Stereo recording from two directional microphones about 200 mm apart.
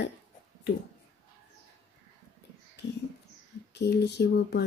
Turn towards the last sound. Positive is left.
turn(degrees=55)  # may be behind; listen again after turning